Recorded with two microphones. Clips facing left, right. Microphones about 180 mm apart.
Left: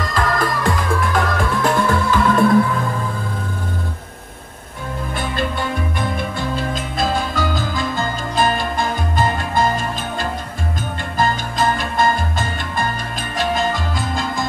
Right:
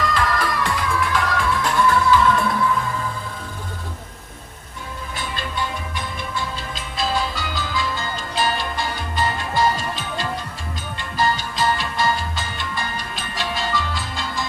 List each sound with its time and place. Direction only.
0.0 s music: 45° left (ahead or behind)
5.1 s music: 55° left (ahead or behind)